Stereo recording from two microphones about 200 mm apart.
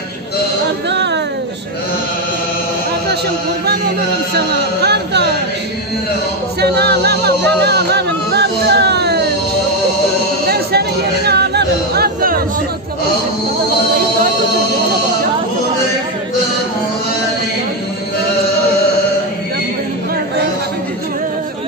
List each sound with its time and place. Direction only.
0.8 s music: 60° right (ahead or behind)
3.6 s speech: 50° right (ahead or behind)
6.6 s music: 55° right (ahead or behind)
10.5 s chatter: 55° right (ahead or behind)